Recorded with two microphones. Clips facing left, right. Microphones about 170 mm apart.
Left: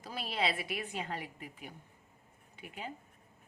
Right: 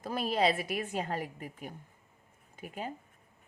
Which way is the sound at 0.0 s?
50° right (ahead or behind).